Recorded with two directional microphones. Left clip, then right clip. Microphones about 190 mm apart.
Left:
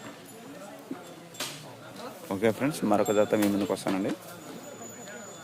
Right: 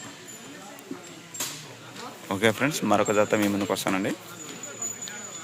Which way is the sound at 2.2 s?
5° right (ahead or behind).